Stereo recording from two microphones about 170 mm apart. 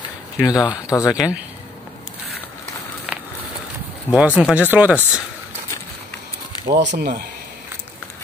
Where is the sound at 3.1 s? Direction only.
Centre (ahead or behind).